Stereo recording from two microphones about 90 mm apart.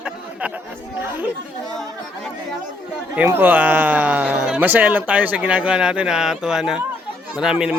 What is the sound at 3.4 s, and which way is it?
Speech, 20° right (ahead or behind).